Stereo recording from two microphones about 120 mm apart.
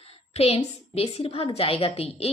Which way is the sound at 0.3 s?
55° left (ahead or behind).